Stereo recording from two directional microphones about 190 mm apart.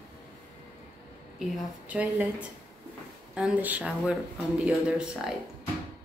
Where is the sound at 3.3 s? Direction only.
5° right (ahead or behind).